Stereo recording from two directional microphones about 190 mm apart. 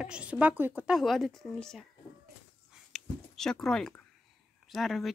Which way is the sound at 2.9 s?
Centre (ahead or behind).